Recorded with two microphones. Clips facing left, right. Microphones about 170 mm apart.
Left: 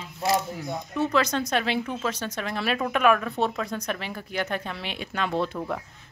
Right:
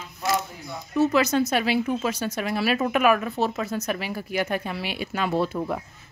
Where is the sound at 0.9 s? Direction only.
5° right (ahead or behind).